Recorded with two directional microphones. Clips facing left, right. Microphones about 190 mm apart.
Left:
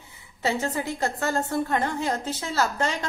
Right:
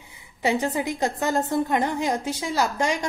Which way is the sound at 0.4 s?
15° right (ahead or behind).